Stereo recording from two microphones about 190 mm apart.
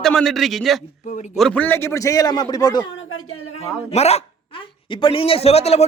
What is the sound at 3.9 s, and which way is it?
Speech, 35° left (ahead or behind).